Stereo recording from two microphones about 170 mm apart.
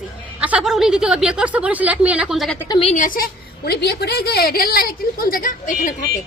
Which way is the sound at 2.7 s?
35° left (ahead or behind).